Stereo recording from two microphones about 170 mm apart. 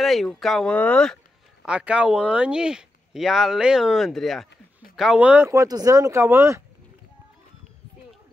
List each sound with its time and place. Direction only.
0.0 s speech: centre (ahead or behind)
1.7 s speech: 5° right (ahead or behind)